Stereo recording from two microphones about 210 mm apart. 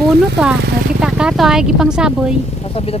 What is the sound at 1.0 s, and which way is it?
Speech, 5° right (ahead or behind).